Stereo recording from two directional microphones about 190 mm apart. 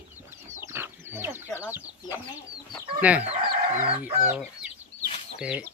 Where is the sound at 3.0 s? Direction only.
5° right (ahead or behind).